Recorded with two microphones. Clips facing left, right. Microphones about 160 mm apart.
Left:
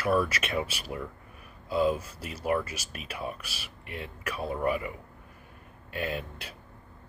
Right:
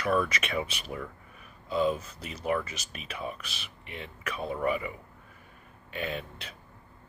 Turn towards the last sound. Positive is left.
turn(degrees=10)  # may be behind; listen again after turning